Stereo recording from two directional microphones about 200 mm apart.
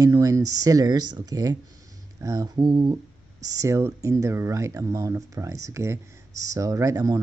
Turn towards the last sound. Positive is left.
turn(degrees=-15)  # may be behind; listen again after turning